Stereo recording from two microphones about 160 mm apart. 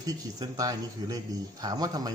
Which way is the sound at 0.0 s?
25° right (ahead or behind).